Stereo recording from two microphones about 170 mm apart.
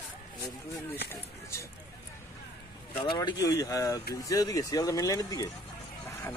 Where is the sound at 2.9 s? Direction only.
30° left (ahead or behind).